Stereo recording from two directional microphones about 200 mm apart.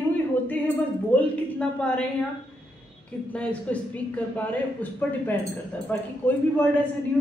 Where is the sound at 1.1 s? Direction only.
5° left (ahead or behind).